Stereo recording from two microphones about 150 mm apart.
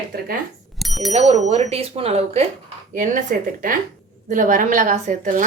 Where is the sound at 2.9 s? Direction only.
60° right (ahead or behind).